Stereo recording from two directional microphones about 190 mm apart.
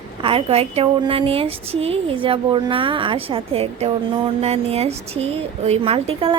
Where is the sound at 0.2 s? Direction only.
30° right (ahead or behind).